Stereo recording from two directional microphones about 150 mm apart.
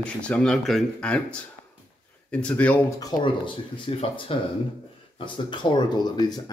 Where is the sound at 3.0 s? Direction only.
35° left (ahead or behind).